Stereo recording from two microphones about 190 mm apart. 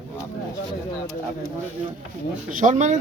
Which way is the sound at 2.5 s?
45° right (ahead or behind).